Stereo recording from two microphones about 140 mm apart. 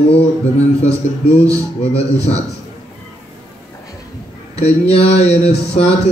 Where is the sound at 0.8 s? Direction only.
50° left (ahead or behind).